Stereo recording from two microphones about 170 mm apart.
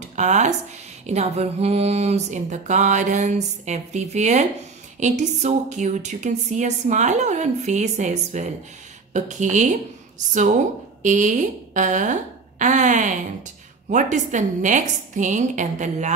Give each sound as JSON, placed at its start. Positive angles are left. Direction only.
{"t": 0.0, "sound": "a woman's voice", "side_deg": -45}